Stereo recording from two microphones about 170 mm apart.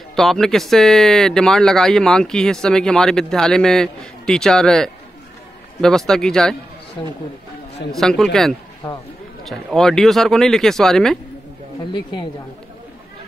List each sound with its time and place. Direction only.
0.1 s speech: centre (ahead or behind)
7.9 s speech: centre (ahead or behind)
11.9 s a woman's voice: 25° left (ahead or behind)